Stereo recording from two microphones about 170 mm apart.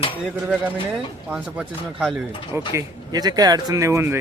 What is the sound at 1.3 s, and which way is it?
Speech, 5° right (ahead or behind).